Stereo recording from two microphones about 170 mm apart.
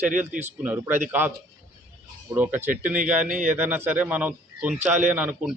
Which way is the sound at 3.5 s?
10° right (ahead or behind).